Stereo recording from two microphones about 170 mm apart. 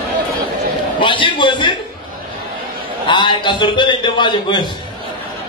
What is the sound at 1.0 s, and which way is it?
Speech, 30° left (ahead or behind).